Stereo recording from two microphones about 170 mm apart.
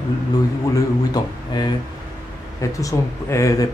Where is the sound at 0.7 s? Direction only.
25° left (ahead or behind).